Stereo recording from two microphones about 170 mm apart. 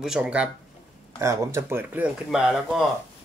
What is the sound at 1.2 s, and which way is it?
Speech, 15° right (ahead or behind).